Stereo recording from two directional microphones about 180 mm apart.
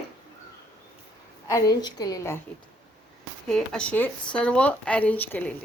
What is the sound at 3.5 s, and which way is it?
Speech, 5° left (ahead or behind).